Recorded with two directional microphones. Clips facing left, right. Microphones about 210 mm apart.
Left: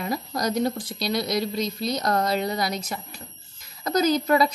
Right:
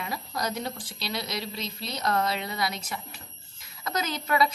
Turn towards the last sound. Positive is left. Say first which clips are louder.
# left 7 dB
turn(degrees=40)  # may be behind; listen again after turning